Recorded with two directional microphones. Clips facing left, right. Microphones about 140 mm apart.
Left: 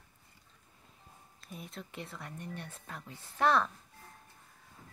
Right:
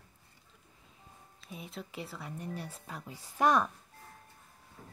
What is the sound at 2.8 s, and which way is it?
Speech, 10° right (ahead or behind).